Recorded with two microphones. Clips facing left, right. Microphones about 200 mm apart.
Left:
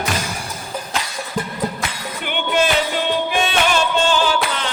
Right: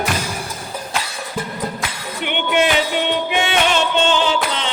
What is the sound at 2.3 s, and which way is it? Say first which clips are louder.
Music: right 1 dB; 20° right (ahead or behind).